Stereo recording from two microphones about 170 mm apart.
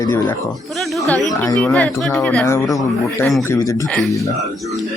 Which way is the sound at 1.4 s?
15° left (ahead or behind).